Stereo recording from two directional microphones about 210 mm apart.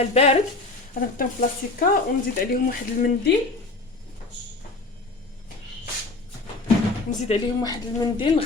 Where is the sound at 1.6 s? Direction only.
45° left (ahead or behind).